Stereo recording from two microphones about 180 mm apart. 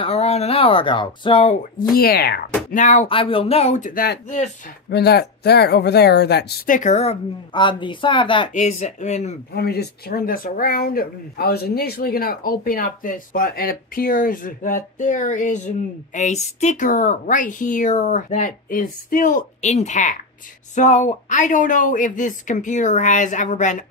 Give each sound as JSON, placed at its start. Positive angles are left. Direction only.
{"t": 0.0, "sound": "speech", "side_deg": 35}
{"t": 2.7, "sound": "speech", "side_deg": 45}
{"t": 3.1, "sound": "speech", "side_deg": 30}
{"t": 4.8, "sound": "speech", "side_deg": 65}
{"t": 8.5, "sound": "speech", "side_deg": 40}
{"t": 9.5, "sound": "speech", "side_deg": 65}